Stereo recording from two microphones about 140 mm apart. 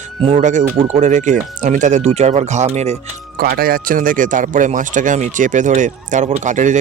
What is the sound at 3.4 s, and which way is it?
Speech, 90° right.